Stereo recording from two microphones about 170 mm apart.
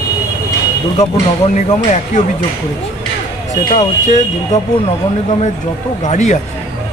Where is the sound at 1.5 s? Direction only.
45° left (ahead or behind).